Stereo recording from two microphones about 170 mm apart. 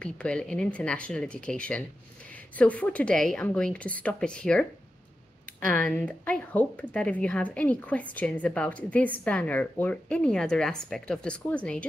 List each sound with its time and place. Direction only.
0.0 s speech: 5° left (ahead or behind)
5.7 s speech: 10° left (ahead or behind)